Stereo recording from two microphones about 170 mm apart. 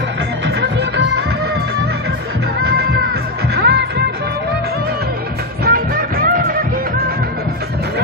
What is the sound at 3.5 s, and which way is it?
Music, 85° right.